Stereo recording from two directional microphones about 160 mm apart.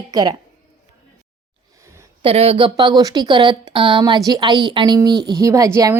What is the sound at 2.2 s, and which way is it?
A woman's voice, 40° right (ahead or behind).